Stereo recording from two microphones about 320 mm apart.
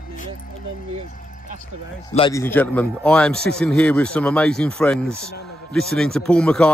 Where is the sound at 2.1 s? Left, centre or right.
Centre.